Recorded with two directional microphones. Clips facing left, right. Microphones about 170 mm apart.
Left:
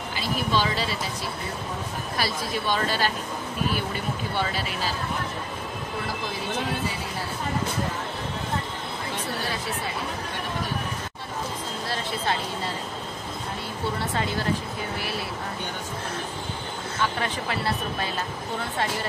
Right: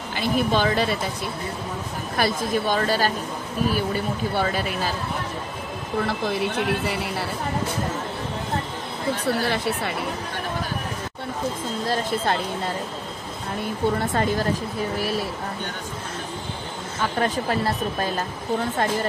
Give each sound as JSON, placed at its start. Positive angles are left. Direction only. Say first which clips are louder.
{"t": 0.1, "sound": "speech", "louder": "right 5 dB", "side_deg": -55}
{"t": 2.1, "sound": "speech", "louder": "right 6 dB", "side_deg": -50}
{"t": 6.9, "sound": "speech", "louder": "right 5 dB", "side_deg": -70}
{"t": 9.2, "sound": "speech", "louder": "right 9 dB", "side_deg": -65}
{"t": 11.9, "sound": "speech", "louder": "right 4 dB", "side_deg": -45}
{"t": 13.9, "sound": "speech", "louder": "right 5 dB", "side_deg": -45}
{"t": 17.0, "sound": "speech", "louder": "right 5 dB", "side_deg": -40}